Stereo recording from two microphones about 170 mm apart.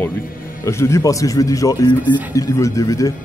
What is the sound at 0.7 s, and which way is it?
Speech, 15° left (ahead or behind).